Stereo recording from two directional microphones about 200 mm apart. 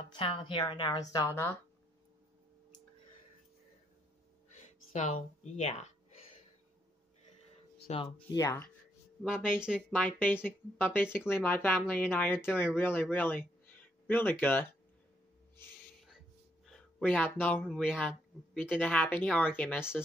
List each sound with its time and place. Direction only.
0.1 s a woman's voice: 25° left (ahead or behind)
4.9 s speech: 40° left (ahead or behind)
7.9 s a woman's voice: 25° left (ahead or behind)
9.2 s speech: 5° right (ahead or behind)
16.6 s speech: 5° left (ahead or behind)